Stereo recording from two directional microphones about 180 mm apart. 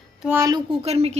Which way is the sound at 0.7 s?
35° right (ahead or behind).